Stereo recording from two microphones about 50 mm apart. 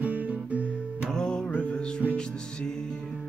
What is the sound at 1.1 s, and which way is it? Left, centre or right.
Music, centre.